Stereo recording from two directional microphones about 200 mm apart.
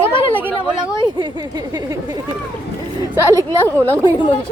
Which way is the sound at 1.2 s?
20° right (ahead or behind).